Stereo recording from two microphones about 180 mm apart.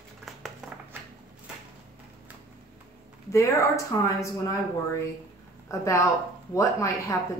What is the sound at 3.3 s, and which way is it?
A woman's voice, 15° left (ahead or behind).